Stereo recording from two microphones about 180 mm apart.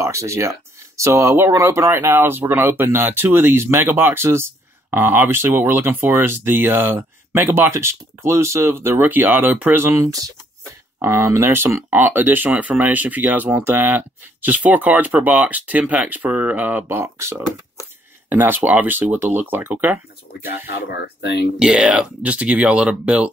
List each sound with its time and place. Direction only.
0.0 s speech: 15° right (ahead or behind)
20.4 s speech: 65° left (ahead or behind)
21.5 s speech: 5° right (ahead or behind)